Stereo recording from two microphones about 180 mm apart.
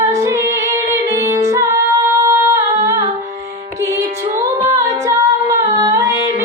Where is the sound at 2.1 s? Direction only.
15° right (ahead or behind).